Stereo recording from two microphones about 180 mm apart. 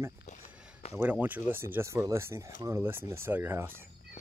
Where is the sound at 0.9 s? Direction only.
10° right (ahead or behind).